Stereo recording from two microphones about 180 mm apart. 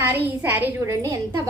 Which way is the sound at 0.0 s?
10° right (ahead or behind).